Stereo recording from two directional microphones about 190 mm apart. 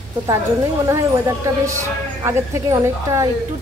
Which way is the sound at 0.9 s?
15° right (ahead or behind).